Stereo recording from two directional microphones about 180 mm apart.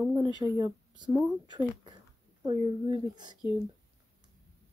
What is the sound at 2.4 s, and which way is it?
Speech, 25° right (ahead or behind).